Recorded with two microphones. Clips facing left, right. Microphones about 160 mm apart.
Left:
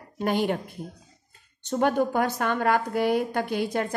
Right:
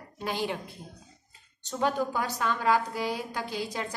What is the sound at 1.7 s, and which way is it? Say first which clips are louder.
A woman's voice: left 5 dB; 55° left (ahead or behind).